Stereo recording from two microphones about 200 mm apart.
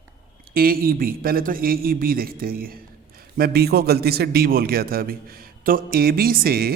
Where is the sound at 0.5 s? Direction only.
50° right (ahead or behind).